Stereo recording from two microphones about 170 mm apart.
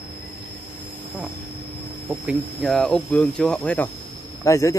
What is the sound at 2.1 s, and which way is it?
Speech, 10° right (ahead or behind).